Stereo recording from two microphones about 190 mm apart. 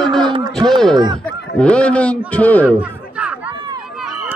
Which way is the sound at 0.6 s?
Centre (ahead or behind).